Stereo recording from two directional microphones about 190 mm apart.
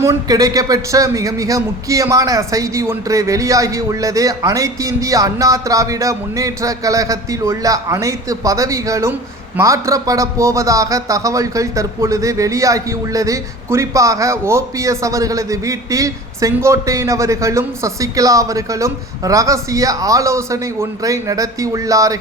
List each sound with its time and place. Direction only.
0.0 s a man's voice: 15° right (ahead or behind)